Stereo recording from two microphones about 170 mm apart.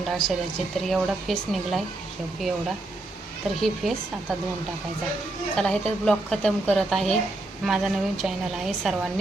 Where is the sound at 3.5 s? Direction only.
Centre (ahead or behind).